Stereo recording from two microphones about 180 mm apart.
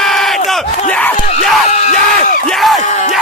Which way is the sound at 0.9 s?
10° left (ahead or behind).